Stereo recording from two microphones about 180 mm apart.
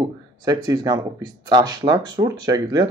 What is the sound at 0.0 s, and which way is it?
Speech, 20° right (ahead or behind).